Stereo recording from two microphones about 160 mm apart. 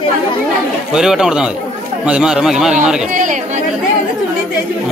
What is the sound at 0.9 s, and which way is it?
Speech, 5° right (ahead or behind).